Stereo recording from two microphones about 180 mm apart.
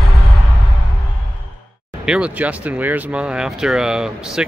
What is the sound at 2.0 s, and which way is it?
Speech, 5° right (ahead or behind).